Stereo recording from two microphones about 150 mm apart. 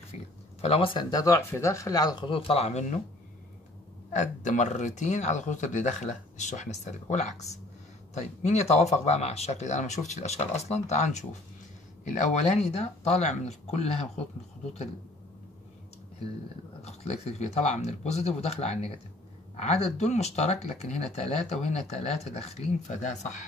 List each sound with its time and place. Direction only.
0.1 s speech: 45° left (ahead or behind)
4.1 s speech: 55° left (ahead or behind)
16.8 s speech: 45° left (ahead or behind)